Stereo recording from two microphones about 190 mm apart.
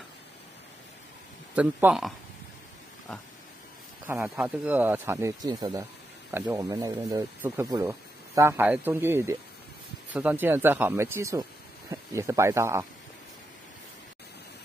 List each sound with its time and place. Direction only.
1.5 s speech: 5° right (ahead or behind)
4.1 s speech: 5° right (ahead or behind)